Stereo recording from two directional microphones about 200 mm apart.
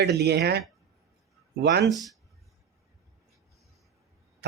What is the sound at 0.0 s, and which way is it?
Speech, 55° right (ahead or behind).